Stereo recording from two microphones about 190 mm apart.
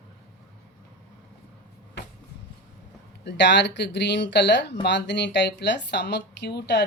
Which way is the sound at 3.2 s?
65° left (ahead or behind).